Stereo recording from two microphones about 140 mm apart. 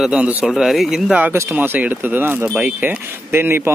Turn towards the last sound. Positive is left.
turn(degrees=-15)  # may be behind; listen again after turning